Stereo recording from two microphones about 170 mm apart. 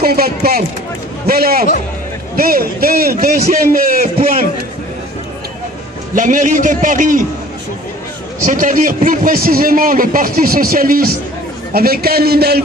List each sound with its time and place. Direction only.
0.0 s a man's voice: 65° right (ahead or behind)
6.1 s a man's voice: 50° right (ahead or behind)
8.4 s a man's voice: 50° right (ahead or behind); by 12.6 s 70° right (ahead or behind)